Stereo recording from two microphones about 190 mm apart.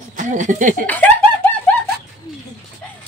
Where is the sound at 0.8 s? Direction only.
10° left (ahead or behind).